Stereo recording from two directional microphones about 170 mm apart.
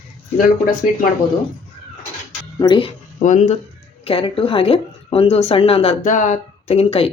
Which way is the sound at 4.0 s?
35° left (ahead or behind).